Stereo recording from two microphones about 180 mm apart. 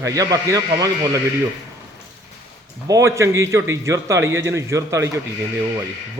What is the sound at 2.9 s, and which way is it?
Speech, 15° right (ahead or behind).